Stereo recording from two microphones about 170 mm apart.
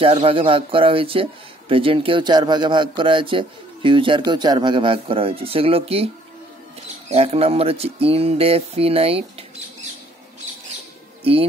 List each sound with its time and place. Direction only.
0.0 s speech: 30° right (ahead or behind)
7.1 s speech: 35° right (ahead or behind)